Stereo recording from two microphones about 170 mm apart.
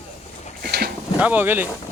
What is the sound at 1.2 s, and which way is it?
Speech, 10° right (ahead or behind).